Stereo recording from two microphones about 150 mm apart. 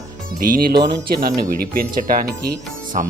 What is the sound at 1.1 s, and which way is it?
Speech, 80° right.